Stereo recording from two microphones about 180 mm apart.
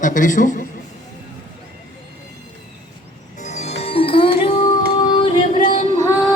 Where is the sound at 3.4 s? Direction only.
40° left (ahead or behind).